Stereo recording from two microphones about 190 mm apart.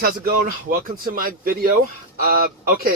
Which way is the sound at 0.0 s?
50° right (ahead or behind).